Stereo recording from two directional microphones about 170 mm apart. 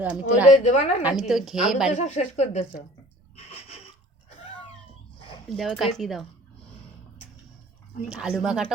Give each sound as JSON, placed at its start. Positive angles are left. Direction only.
{"t": 0.0, "sound": "a woman's voice", "side_deg": -10}
{"t": 0.4, "sound": "speech", "side_deg": 45}
{"t": 1.3, "sound": "speech", "side_deg": 0}
{"t": 1.9, "sound": "speech", "side_deg": 45}
{"t": 3.3, "sound": "a sound", "side_deg": 35}
{"t": 5.5, "sound": "speech", "side_deg": 0}
{"t": 8.1, "sound": "speech", "side_deg": -5}